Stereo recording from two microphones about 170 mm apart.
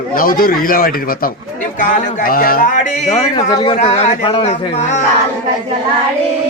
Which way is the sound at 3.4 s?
30° left (ahead or behind).